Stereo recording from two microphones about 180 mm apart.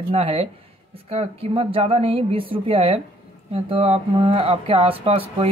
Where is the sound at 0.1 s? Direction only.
35° right (ahead or behind).